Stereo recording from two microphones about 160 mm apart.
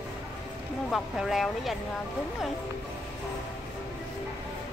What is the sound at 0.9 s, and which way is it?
Speech, centre (ahead or behind).